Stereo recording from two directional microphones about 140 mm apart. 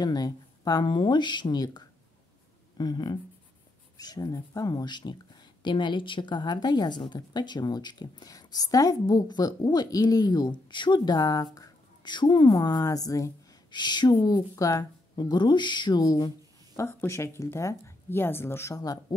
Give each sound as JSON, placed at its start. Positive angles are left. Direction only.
{"t": 0.0, "sound": "speech", "side_deg": 30}
{"t": 16.7, "sound": "speech", "side_deg": 20}